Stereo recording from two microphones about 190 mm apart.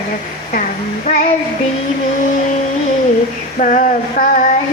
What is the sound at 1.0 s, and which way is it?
Female singing, 40° left (ahead or behind).